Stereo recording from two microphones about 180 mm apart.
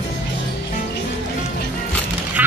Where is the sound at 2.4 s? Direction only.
10° right (ahead or behind).